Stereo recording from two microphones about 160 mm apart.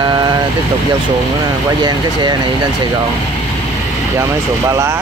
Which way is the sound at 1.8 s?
25° right (ahead or behind).